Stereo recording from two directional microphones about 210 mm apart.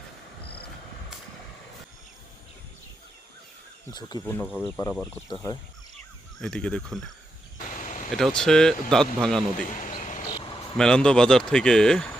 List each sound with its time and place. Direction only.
3.9 s speech: 20° left (ahead or behind)
6.4 s speech: 5° left (ahead or behind)
7.7 s a sound: 35° left (ahead or behind)
8.1 s speech: 5° left (ahead or behind)
9.6 s speech: 35° left (ahead or behind)
10.0 s vehicle: 35° left (ahead or behind)
10.8 s speech: 5° left (ahead or behind)